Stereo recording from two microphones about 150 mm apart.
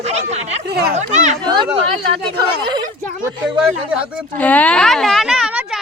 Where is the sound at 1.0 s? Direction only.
50° right (ahead or behind).